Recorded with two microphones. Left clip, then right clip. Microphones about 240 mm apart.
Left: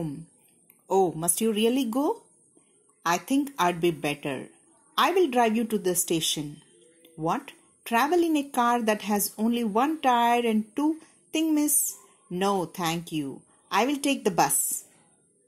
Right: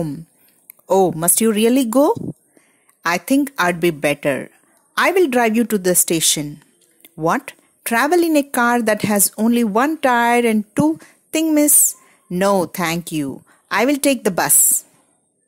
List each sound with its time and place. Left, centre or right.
0.8 s a woman's voice: right